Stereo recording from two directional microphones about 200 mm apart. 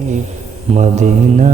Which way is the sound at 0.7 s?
35° right (ahead or behind).